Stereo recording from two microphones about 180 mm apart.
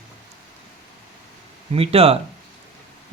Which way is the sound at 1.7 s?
35° right (ahead or behind).